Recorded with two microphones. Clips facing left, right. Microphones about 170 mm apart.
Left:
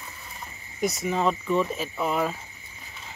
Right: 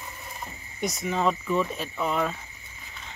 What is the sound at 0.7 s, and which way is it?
Speech, centre (ahead or behind).